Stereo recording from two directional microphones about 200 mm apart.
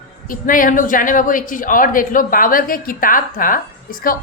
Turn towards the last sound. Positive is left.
turn(degrees=45)  # may be behind; listen again after turning